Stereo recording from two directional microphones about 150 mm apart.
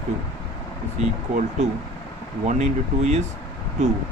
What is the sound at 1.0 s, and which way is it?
Speech, 50° right (ahead or behind).